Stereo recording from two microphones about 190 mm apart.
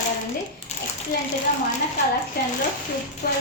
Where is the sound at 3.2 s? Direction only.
60° left (ahead or behind).